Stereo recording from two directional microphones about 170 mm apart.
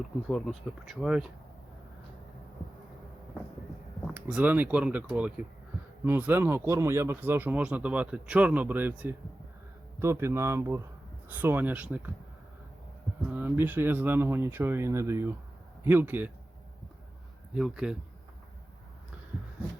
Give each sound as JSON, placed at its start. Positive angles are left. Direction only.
{"t": 0.3, "sound": "speech", "side_deg": 0}
{"t": 4.0, "sound": "speech", "side_deg": -5}
{"t": 13.3, "sound": "speech", "side_deg": -10}
{"t": 17.5, "sound": "speech", "side_deg": -5}